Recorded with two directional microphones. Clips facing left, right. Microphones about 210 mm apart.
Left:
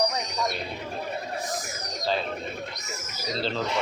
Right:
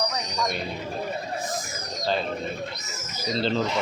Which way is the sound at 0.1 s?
Centre (ahead or behind).